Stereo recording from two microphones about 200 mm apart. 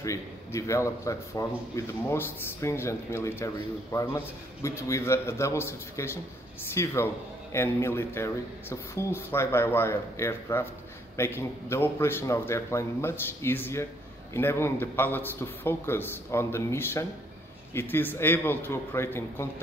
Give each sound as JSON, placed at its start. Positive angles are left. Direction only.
{"t": 0.0, "sound": "speech", "side_deg": 15}